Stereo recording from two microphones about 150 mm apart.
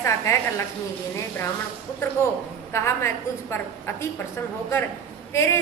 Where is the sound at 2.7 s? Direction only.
15° left (ahead or behind).